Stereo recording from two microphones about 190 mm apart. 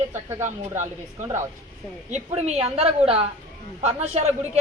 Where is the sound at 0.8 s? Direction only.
15° right (ahead or behind).